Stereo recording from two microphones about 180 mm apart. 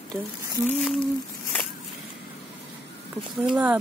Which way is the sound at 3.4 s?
10° right (ahead or behind).